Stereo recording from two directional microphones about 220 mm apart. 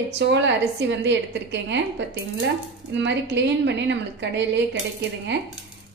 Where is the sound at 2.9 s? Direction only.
55° right (ahead or behind).